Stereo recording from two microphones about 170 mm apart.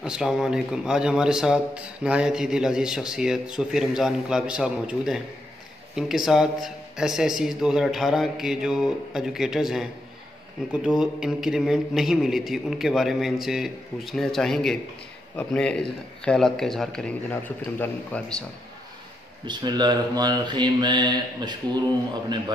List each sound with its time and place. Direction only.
0.0 s a man's voice: 5° right (ahead or behind)
19.4 s speech: 25° right (ahead or behind)